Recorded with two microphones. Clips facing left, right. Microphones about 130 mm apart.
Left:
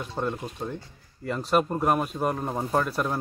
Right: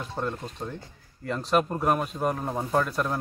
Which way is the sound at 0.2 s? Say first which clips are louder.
Left 2 dB; 10° left (ahead or behind).